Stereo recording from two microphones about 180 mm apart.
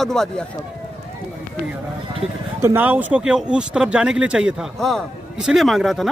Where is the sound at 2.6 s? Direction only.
10° right (ahead or behind).